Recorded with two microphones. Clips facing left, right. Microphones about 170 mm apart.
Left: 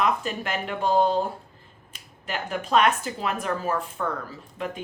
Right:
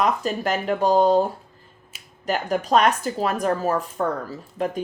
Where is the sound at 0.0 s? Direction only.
40° right (ahead or behind).